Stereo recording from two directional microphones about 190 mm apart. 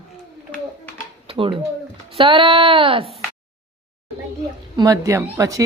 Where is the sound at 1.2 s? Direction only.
30° right (ahead or behind).